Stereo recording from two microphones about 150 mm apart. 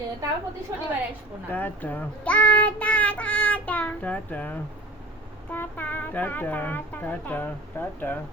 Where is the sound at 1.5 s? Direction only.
10° left (ahead or behind).